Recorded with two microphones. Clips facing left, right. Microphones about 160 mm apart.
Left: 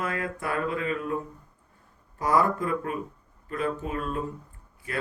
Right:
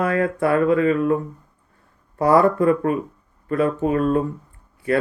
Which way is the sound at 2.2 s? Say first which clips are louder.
Right 9 dB; 65° right (ahead or behind).